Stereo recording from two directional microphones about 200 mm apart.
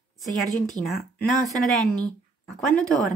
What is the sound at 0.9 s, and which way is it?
Speech, centre (ahead or behind).